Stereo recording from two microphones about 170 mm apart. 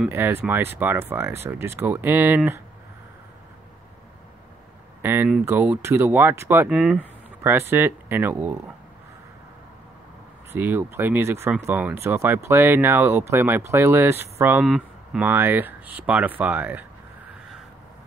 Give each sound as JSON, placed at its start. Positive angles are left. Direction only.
{"t": 0.1, "sound": "speech", "side_deg": -15}
{"t": 5.0, "sound": "speech", "side_deg": -10}
{"t": 10.5, "sound": "speech", "side_deg": -15}